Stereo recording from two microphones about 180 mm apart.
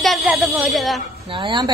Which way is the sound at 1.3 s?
25° right (ahead or behind).